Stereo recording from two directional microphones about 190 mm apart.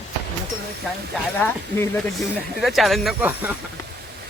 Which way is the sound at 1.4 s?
10° left (ahead or behind).